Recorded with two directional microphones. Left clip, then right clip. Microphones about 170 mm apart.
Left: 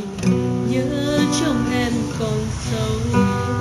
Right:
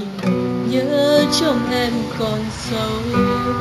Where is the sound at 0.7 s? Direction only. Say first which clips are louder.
Right 8 dB; 20° right (ahead or behind).